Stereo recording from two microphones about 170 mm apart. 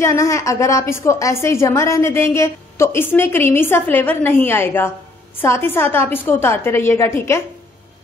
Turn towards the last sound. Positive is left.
turn(degrees=15)  # may be behind; listen again after turning